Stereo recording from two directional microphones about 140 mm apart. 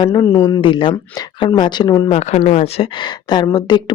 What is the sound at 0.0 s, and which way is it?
Speech, 25° left (ahead or behind).